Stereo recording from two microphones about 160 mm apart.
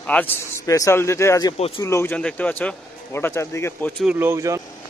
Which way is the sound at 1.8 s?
15° left (ahead or behind).